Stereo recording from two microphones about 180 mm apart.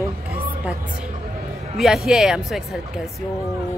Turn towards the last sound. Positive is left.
turn(degrees=0)  # may be behind; listen again after turning